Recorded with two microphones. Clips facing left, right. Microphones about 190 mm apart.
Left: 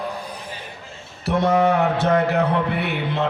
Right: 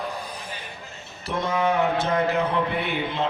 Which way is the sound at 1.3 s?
70° left (ahead or behind).